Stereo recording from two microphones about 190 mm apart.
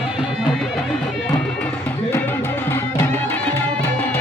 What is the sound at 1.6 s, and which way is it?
Music, 10° left (ahead or behind).